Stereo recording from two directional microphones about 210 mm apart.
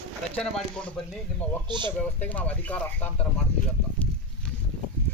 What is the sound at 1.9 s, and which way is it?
Speech, 5° left (ahead or behind).